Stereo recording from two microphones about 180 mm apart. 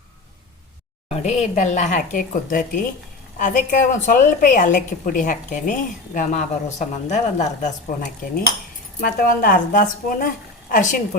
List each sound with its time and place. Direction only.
1.1 s a woman's voice: 35° left (ahead or behind)
9.0 s a woman's voice: 55° left (ahead or behind)